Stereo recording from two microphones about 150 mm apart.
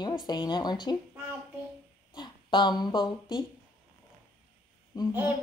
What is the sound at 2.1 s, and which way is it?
Speech, 30° left (ahead or behind).